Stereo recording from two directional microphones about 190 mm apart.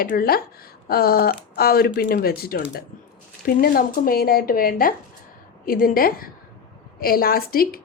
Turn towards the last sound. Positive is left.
turn(degrees=50)  # may be behind; listen again after turning